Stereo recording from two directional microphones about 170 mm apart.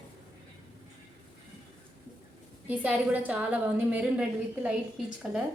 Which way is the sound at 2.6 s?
10° right (ahead or behind).